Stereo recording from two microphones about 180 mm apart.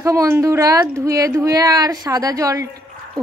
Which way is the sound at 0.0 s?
15° right (ahead or behind).